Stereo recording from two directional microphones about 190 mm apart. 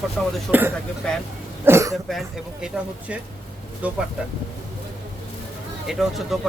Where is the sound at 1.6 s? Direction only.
15° right (ahead or behind).